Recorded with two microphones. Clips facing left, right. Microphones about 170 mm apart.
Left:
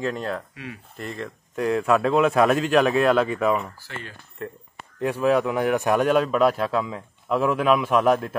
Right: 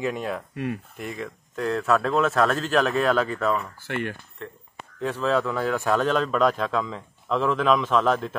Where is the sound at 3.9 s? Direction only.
65° right (ahead or behind).